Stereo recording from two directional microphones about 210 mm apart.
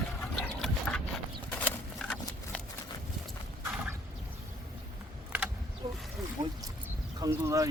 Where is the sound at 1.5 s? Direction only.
5° left (ahead or behind).